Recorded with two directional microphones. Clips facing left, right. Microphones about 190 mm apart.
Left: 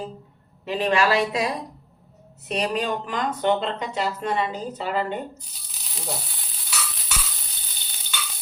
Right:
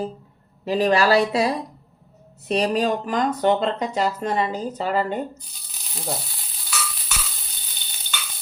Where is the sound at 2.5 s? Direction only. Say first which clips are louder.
Right 4 dB; 35° right (ahead or behind).